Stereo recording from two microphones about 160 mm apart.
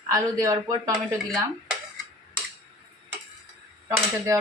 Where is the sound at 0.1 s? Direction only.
20° right (ahead or behind).